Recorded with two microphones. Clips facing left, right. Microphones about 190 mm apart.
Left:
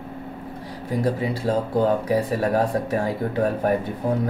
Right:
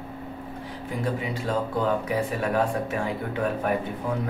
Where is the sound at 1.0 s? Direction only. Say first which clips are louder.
Left 5 dB; 35° left (ahead or behind).